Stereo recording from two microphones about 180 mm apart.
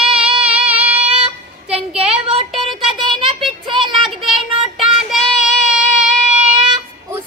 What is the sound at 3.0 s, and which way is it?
Child singing, 30° right (ahead or behind).